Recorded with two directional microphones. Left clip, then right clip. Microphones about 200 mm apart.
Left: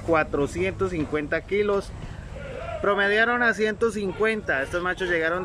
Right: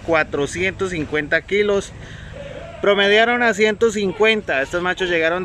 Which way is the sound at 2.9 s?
5° right (ahead or behind).